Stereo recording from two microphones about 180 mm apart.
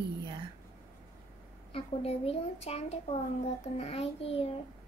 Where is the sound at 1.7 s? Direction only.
35° left (ahead or behind).